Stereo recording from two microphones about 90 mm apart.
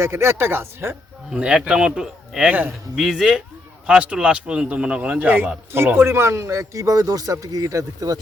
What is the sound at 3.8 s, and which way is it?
A man's voice, 10° right (ahead or behind).